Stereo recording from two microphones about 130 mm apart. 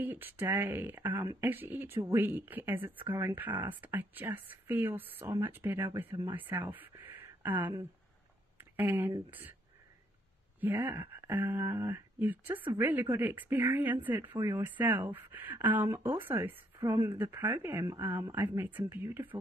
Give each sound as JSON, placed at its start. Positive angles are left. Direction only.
{"t": 0.0, "sound": "speech", "side_deg": -15}
{"t": 10.6, "sound": "speech", "side_deg": -15}